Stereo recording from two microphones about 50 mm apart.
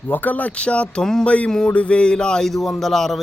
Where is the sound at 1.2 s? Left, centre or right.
Left.